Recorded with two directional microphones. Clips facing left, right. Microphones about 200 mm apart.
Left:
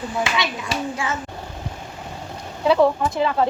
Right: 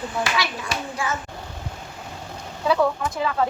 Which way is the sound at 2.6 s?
20° left (ahead or behind).